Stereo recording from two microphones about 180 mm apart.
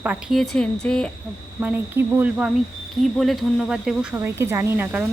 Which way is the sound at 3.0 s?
Centre (ahead or behind).